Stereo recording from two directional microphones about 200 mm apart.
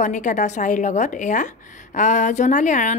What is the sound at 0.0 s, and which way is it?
A woman's voice, 40° left (ahead or behind).